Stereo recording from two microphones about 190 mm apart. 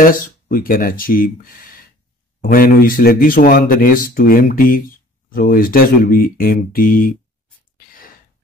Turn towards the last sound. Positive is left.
turn(degrees=50)  # may be behind; listen again after turning